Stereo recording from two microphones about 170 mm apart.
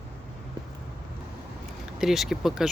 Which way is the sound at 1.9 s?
Centre (ahead or behind).